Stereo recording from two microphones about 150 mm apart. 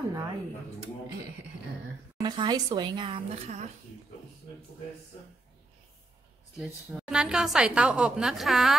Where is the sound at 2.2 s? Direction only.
30° right (ahead or behind).